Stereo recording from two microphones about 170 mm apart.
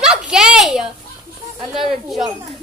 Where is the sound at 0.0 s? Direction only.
5° right (ahead or behind).